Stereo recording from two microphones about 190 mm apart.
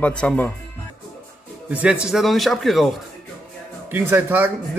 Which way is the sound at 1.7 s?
5° right (ahead or behind).